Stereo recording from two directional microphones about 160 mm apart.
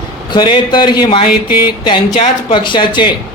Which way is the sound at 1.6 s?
30° left (ahead or behind).